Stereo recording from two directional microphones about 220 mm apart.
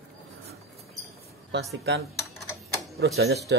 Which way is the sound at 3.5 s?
55° right (ahead or behind).